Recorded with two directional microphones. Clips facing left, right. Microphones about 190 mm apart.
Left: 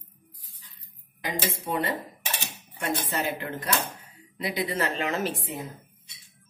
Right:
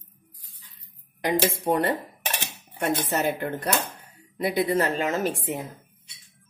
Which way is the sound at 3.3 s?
55° right (ahead or behind).